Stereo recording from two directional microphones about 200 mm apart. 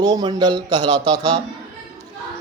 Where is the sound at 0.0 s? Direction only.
20° right (ahead or behind).